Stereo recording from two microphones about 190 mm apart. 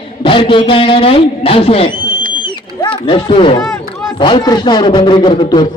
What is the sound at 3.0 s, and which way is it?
Speech, 25° left (ahead or behind).